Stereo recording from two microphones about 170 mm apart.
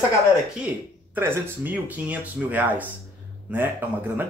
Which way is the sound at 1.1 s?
10° right (ahead or behind).